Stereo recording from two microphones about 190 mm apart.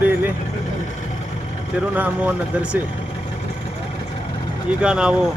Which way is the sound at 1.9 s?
10° right (ahead or behind).